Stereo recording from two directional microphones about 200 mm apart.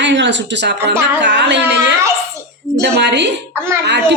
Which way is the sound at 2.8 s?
60° right (ahead or behind).